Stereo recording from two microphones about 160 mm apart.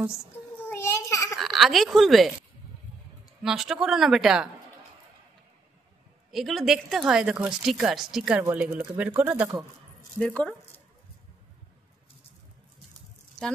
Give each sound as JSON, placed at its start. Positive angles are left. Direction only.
{"t": 0.7, "sound": "babbling", "side_deg": 15}
{"t": 1.3, "sound": "a woman's voice", "side_deg": 0}
{"t": 3.4, "sound": "a woman's voice", "side_deg": 0}
{"t": 6.3, "sound": "a woman's voice", "side_deg": 0}
{"t": 10.1, "sound": "speech", "side_deg": 5}